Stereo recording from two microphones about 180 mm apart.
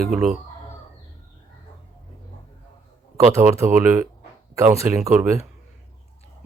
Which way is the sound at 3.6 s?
15° right (ahead or behind).